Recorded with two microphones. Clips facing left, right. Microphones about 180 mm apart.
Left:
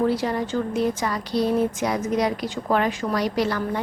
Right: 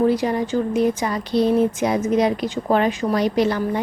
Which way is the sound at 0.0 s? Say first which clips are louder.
Right 4 dB; 15° right (ahead or behind).